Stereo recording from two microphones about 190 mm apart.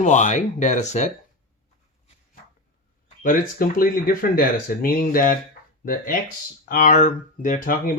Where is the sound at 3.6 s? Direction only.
50° left (ahead or behind).